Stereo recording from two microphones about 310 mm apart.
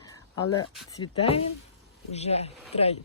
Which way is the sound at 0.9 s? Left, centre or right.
Centre.